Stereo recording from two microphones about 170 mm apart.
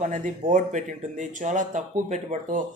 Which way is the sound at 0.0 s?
50° right (ahead or behind).